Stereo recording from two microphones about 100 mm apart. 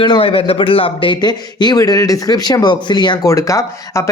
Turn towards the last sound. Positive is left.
turn(degrees=30)  # may be behind; listen again after turning